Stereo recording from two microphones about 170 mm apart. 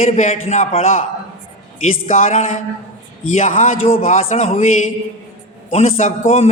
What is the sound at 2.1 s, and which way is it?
A woman's voice, 50° left (ahead or behind).